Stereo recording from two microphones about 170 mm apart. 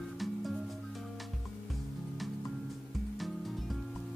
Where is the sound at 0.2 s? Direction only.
Centre (ahead or behind).